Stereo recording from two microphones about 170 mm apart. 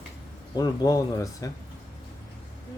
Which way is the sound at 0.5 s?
20° left (ahead or behind).